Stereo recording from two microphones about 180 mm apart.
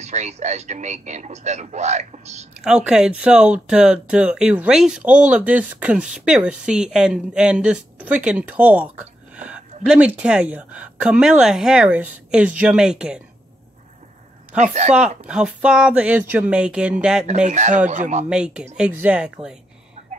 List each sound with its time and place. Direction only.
0.0 s speech: 40° right (ahead or behind)
2.5 s speech: 5° right (ahead or behind)
14.6 s speech: 40° right (ahead or behind)
15.0 s speech: 5° right (ahead or behind)
17.5 s speech: 40° right (ahead or behind)
18.3 s speech: 5° right (ahead or behind)